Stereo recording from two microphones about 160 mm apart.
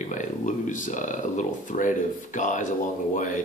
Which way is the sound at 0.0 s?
50° left (ahead or behind).